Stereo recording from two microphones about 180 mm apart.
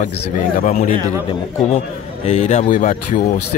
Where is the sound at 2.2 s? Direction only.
40° left (ahead or behind).